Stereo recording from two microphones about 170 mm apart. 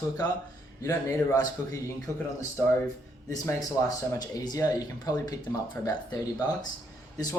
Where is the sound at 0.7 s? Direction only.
20° left (ahead or behind).